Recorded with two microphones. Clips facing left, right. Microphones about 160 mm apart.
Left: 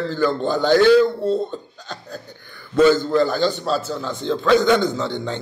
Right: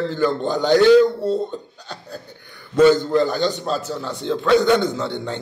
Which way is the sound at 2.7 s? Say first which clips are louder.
Right 1 dB; 20° right (ahead or behind).